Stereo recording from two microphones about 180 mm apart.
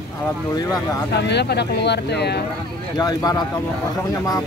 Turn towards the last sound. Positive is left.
turn(degrees=20)  # may be behind; listen again after turning